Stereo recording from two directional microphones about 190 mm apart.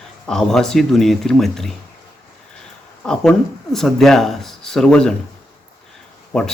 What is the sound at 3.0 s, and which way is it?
Speech, 5° left (ahead or behind).